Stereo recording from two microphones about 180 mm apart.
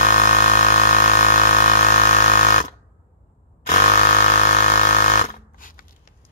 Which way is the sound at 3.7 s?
40° left (ahead or behind).